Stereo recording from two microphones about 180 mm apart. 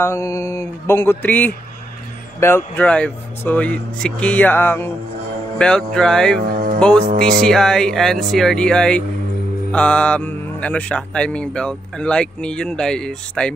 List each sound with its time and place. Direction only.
0.0 s speech: 15° left (ahead or behind)
6.5 s music: 55° right (ahead or behind)
6.8 s speech: 5° left (ahead or behind)